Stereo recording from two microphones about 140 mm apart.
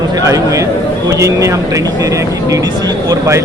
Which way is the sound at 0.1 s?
25° right (ahead or behind).